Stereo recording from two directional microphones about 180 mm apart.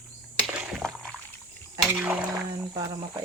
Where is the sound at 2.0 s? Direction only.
5° right (ahead or behind).